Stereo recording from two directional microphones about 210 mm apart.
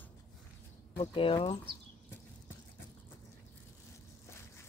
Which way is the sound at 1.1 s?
25° left (ahead or behind).